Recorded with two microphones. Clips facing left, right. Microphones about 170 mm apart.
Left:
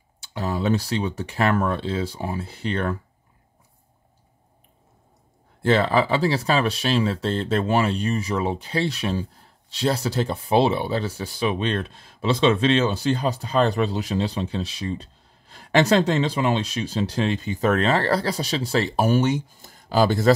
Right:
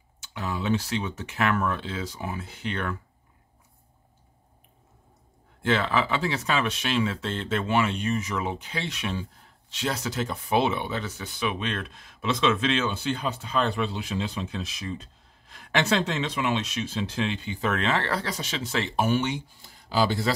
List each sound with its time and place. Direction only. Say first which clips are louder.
0.2 s speech: left 6 dB; 35° left (ahead or behind)
5.6 s speech: left 5 dB; 35° left (ahead or behind)